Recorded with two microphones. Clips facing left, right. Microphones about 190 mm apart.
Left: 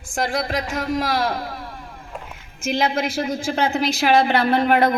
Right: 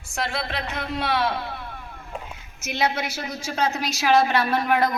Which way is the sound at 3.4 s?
55° left (ahead or behind).